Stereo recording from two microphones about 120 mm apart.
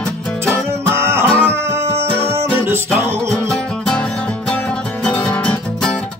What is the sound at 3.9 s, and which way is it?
Music, 5° left (ahead or behind).